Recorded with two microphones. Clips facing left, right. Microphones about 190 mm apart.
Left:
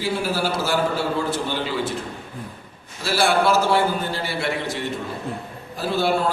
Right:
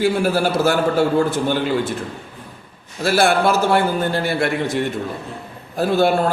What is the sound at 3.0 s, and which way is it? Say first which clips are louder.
A man's voice: right 4 dB; 55° right (ahead or behind).